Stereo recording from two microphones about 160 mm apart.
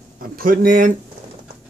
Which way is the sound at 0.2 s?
65° right (ahead or behind).